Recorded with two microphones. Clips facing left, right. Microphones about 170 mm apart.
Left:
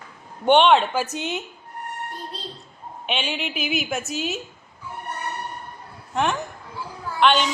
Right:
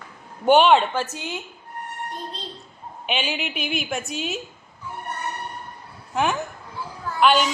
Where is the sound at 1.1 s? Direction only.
20° left (ahead or behind).